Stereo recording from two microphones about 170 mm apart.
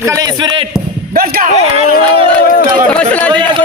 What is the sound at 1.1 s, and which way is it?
Speech, 60° right (ahead or behind).